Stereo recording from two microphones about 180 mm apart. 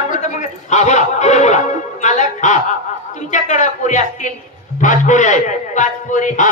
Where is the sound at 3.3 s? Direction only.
45° left (ahead or behind).